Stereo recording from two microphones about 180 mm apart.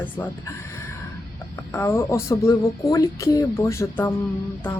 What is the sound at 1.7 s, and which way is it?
Speech, 15° left (ahead or behind).